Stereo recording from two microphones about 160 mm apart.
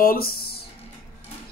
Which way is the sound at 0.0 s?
70° left (ahead or behind).